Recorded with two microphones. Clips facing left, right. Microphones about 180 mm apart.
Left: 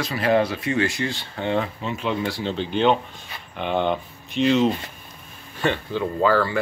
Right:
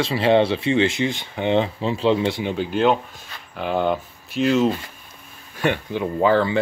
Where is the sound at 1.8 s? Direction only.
30° right (ahead or behind).